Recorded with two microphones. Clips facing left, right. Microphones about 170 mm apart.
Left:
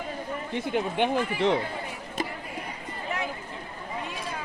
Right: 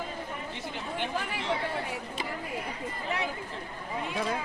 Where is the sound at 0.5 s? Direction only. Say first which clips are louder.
Left 13 dB; 60° left (ahead or behind).